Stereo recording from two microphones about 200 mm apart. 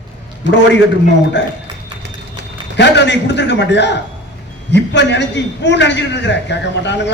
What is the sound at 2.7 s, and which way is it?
A man's voice, 60° left (ahead or behind).